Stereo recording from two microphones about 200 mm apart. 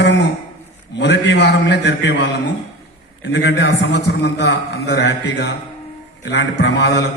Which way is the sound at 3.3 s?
60° left (ahead or behind).